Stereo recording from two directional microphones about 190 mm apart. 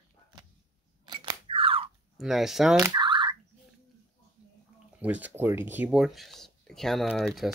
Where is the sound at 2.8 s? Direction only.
25° right (ahead or behind).